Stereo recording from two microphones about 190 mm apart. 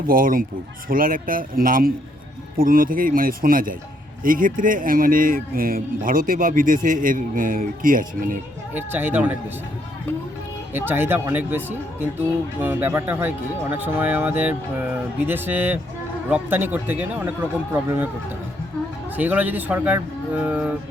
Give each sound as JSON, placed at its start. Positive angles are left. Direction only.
{"t": 0.0, "sound": "speech", "side_deg": -45}
{"t": 8.7, "sound": "speech", "side_deg": -10}
{"t": 10.8, "sound": "speech", "side_deg": -10}
{"t": 19.1, "sound": "speech", "side_deg": -10}